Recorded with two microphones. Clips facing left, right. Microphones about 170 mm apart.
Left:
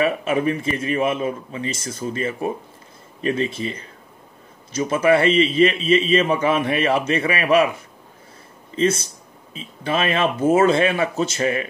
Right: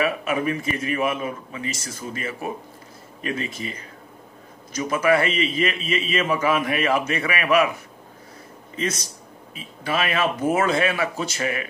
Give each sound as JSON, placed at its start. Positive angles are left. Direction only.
{"t": 0.0, "sound": "a man's voice", "side_deg": 30}
{"t": 4.7, "sound": "a man's voice", "side_deg": 30}
{"t": 8.7, "sound": "a man's voice", "side_deg": 30}